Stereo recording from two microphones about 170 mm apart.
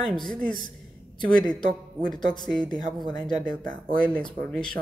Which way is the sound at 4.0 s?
5° left (ahead or behind).